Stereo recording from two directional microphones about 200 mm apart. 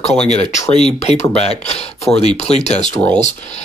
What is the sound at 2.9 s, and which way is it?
Speech, 10° left (ahead or behind).